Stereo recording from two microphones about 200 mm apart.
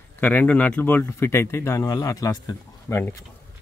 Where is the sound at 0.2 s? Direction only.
10° left (ahead or behind).